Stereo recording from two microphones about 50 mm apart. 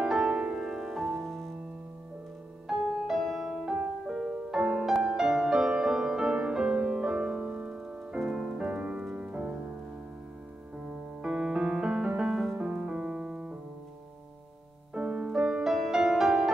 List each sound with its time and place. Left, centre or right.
0.0 s music: centre
0.6 s music: centre
2.7 s music: centre
8.2 s music: centre
8.5 s music: right
10.9 s music: centre
12.6 s piano: centre
15.0 s music: centre